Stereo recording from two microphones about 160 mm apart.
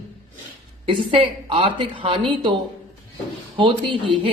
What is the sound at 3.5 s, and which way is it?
Speech, 30° right (ahead or behind).